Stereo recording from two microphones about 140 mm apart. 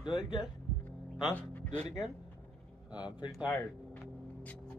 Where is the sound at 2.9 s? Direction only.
30° left (ahead or behind).